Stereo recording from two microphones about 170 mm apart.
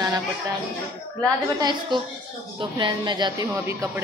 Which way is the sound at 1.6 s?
25° right (ahead or behind).